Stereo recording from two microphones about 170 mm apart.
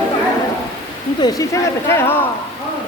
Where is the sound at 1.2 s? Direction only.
20° left (ahead or behind).